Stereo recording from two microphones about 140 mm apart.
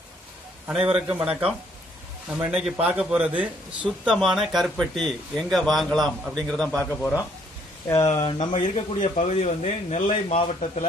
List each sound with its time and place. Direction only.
0.7 s a man's voice: 5° right (ahead or behind); by 7.2 s 10° left (ahead or behind)
7.9 s speech: 25° left (ahead or behind)
8.3 s a man's voice: 35° left (ahead or behind)